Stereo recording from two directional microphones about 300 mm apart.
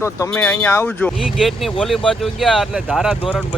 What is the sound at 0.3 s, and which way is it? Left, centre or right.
Speech, centre.